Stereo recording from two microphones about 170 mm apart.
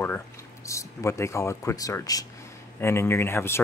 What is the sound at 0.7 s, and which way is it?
Speech, 15° left (ahead or behind).